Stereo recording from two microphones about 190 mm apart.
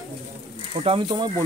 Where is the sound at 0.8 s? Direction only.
30° right (ahead or behind).